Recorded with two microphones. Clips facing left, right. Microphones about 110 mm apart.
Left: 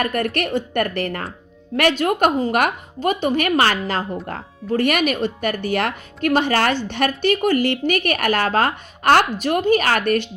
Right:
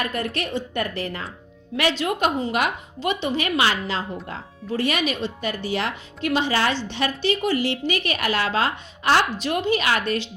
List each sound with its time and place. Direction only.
0.0 s a woman's voice: 55° left (ahead or behind)